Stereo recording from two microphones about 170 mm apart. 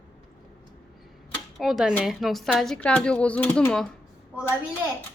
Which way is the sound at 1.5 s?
Centre (ahead or behind).